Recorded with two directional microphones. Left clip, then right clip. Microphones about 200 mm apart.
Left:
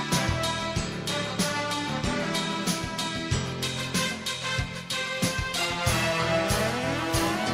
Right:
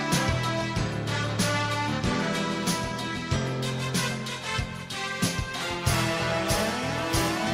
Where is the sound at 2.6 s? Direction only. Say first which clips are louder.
Even; centre (ahead or behind).